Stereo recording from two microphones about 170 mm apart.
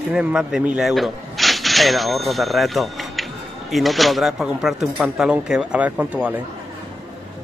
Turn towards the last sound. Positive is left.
turn(degrees=-10)  # may be behind; listen again after turning